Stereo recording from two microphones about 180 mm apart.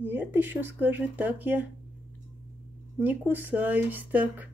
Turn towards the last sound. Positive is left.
turn(degrees=-10)  # may be behind; listen again after turning